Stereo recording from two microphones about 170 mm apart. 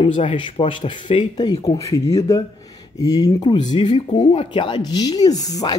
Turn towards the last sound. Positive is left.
turn(degrees=20)  # may be behind; listen again after turning